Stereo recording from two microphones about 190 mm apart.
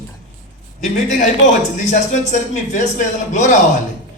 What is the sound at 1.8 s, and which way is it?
Speech, 40° left (ahead or behind).